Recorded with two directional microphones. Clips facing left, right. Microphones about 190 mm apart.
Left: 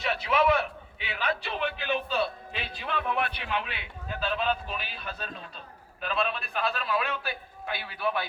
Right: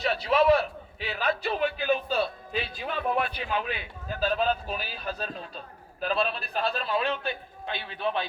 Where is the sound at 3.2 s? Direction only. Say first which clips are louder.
Right 2 dB; 60° left (ahead or behind).